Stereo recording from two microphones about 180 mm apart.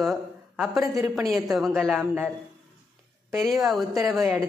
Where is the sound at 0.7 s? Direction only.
15° right (ahead or behind).